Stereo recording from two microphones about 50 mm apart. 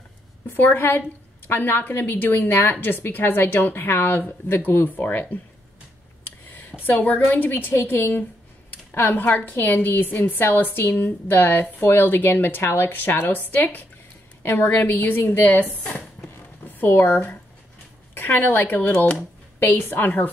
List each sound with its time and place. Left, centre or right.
0.6 s a woman's voice: left
6.5 s a woman's voice: left
8.9 s a woman's voice: left
16.6 s a woman's voice: left